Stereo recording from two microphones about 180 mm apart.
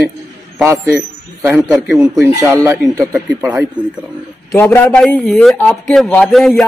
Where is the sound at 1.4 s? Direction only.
10° right (ahead or behind).